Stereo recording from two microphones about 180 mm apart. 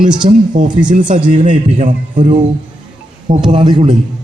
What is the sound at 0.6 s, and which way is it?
Speech, 45° right (ahead or behind).